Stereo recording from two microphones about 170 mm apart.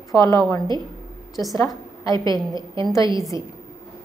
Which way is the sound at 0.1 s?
20° left (ahead or behind).